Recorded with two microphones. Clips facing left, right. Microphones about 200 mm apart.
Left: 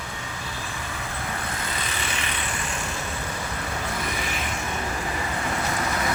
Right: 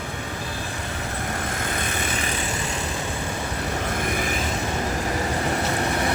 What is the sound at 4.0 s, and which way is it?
Vehicle, 50° right (ahead or behind).